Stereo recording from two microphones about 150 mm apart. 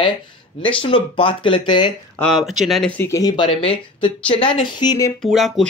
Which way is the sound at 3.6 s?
40° left (ahead or behind).